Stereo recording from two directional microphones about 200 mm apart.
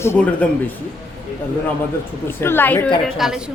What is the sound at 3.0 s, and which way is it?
Speech, centre (ahead or behind).